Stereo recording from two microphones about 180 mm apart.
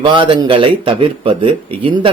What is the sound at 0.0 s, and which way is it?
Speech, 25° right (ahead or behind).